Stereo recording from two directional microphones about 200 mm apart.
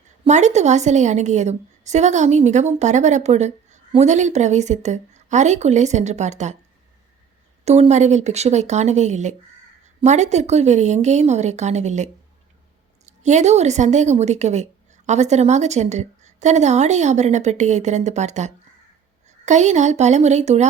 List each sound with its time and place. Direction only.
0.3 s a woman's voice: 35° right (ahead or behind)
7.6 s a woman's voice: 35° right (ahead or behind)